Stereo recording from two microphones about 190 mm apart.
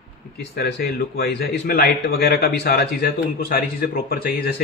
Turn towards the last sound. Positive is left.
turn(degrees=50)  # may be behind; listen again after turning